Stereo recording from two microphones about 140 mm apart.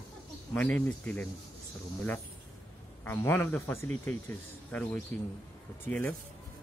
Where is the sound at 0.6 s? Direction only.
10° left (ahead or behind).